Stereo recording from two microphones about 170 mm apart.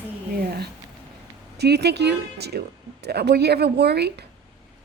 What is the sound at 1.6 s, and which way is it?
Speech, 75° right (ahead or behind).